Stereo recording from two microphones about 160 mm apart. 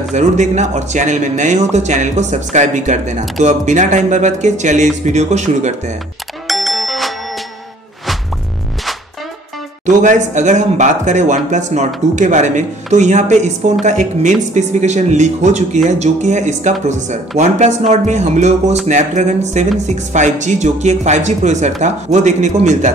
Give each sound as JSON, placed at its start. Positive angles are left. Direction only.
{"t": 0.1, "sound": "speech", "side_deg": -45}
{"t": 6.4, "sound": "music", "side_deg": 0}
{"t": 9.8, "sound": "speech", "side_deg": -50}